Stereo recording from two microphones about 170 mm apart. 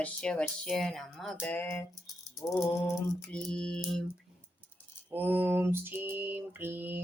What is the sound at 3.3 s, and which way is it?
Speech, 5° left (ahead or behind).